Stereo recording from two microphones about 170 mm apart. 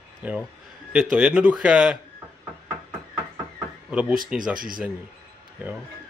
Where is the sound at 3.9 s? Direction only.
5° right (ahead or behind).